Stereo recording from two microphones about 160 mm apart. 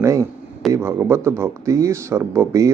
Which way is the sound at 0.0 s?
20° right (ahead or behind).